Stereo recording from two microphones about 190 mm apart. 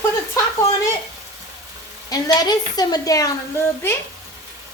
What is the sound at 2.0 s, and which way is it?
A woman's voice, 20° left (ahead or behind).